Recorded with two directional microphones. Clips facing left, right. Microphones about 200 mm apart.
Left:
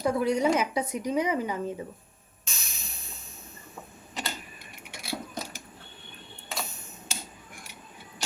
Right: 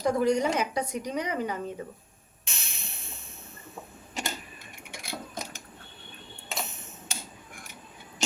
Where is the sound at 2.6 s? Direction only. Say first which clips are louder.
Right 1 dB; 25° right (ahead or behind).